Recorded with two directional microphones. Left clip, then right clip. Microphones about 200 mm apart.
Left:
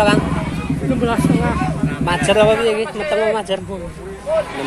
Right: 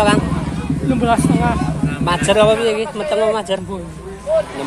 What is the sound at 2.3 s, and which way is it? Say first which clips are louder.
Speech: even; centre (ahead or behind).